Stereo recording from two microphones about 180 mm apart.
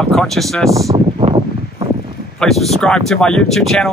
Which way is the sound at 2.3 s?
Centre (ahead or behind).